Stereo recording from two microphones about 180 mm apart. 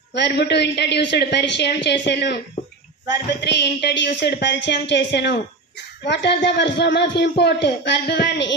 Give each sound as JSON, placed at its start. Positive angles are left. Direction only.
{"t": 0.1, "sound": "a man's voice", "side_deg": 70}